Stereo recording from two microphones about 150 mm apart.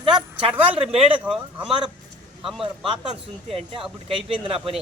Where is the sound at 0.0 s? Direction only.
35° right (ahead or behind).